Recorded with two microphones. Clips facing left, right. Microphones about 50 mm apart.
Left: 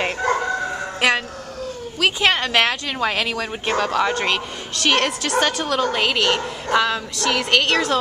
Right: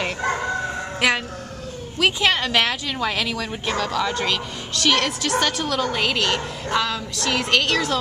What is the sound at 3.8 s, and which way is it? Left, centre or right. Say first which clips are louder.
A child's voice: left 4 dB; left.